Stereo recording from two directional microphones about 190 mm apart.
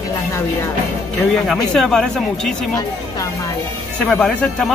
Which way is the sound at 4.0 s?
5° left (ahead or behind).